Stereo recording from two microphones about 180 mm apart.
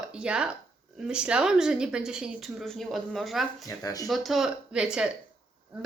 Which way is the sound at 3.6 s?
20° left (ahead or behind).